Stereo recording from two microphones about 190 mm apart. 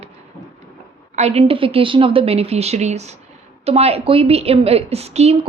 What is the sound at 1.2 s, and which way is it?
A woman's voice, 35° right (ahead or behind).